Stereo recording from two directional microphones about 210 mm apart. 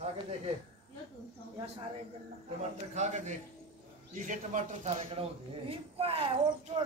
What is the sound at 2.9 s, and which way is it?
A man's voice, 35° right (ahead or behind).